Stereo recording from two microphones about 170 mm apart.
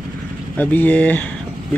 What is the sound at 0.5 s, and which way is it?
Speech, 10° left (ahead or behind).